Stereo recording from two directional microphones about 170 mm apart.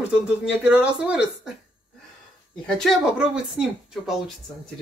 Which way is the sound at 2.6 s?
5° left (ahead or behind).